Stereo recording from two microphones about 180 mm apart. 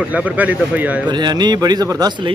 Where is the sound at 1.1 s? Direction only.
25° right (ahead or behind).